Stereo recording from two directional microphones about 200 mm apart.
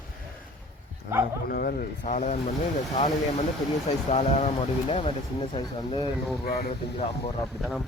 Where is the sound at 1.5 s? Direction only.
45° left (ahead or behind); by 6.1 s 25° left (ahead or behind).